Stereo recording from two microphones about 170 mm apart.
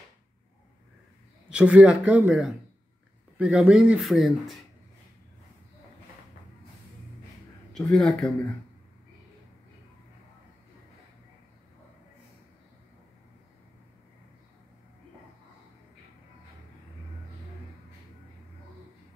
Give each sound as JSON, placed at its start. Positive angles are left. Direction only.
{"t": 1.5, "sound": "speech", "side_deg": -5}
{"t": 7.7, "sound": "speech", "side_deg": 5}